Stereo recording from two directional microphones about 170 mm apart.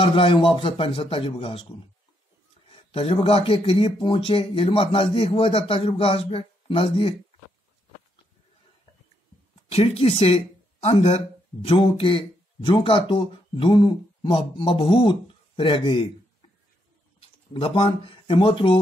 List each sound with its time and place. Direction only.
0.0 s speech: 30° left (ahead or behind)
2.7 s speech: 35° left (ahead or behind)
9.7 s speech: 35° left (ahead or behind)